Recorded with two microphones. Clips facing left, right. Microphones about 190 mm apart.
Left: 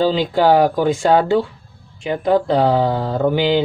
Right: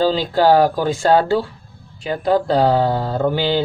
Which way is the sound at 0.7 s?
20° left (ahead or behind).